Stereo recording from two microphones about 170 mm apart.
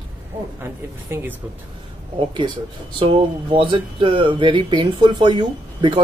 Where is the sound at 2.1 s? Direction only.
30° right (ahead or behind).